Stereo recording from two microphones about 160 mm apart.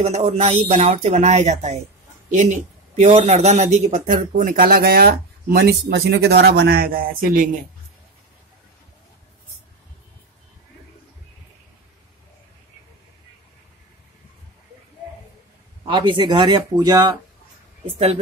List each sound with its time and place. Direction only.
0.0 s speech: 40° right (ahead or behind); by 7.4 s 60° right (ahead or behind)
15.8 s speech: 30° right (ahead or behind)
17.9 s a woman's voice: 35° right (ahead or behind)